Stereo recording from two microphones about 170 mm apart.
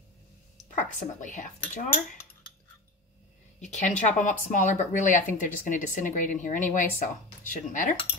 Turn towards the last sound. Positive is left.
turn(degrees=50)  # may be behind; listen again after turning